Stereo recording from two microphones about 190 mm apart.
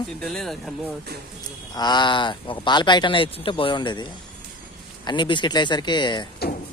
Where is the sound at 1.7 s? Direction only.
20° left (ahead or behind).